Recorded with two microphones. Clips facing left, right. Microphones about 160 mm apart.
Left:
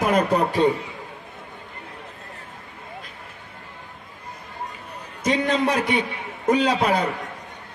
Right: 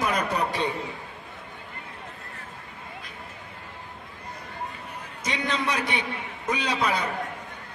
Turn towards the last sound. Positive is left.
turn(degrees=45)  # may be behind; listen again after turning